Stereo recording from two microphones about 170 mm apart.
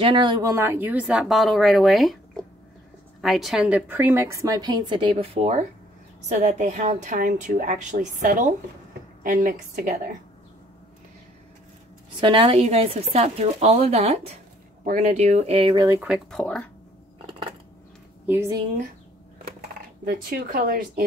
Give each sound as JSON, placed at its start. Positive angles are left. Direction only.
{"t": 0.0, "sound": "speech", "side_deg": -25}
{"t": 3.2, "sound": "a woman's voice", "side_deg": 0}
{"t": 12.2, "sound": "speech", "side_deg": -30}
{"t": 16.0, "sound": "speech", "side_deg": 0}
{"t": 18.2, "sound": "speech", "side_deg": -10}
{"t": 20.1, "sound": "speech", "side_deg": -60}